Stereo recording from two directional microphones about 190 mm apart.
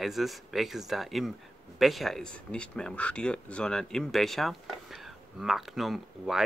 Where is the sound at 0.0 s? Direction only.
Centre (ahead or behind).